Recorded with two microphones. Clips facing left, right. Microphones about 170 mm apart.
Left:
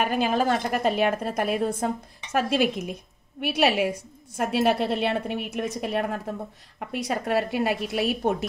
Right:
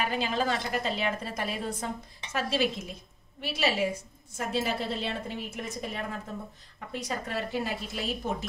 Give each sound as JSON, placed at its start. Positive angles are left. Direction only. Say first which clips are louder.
{"t": 0.0, "sound": "a woman's voice", "louder": "left 6 dB", "side_deg": 55}